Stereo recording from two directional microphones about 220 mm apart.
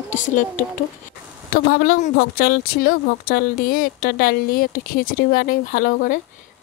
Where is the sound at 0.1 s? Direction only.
35° left (ahead or behind).